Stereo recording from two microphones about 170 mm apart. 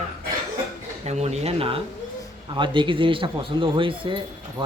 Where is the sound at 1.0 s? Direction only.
40° right (ahead or behind).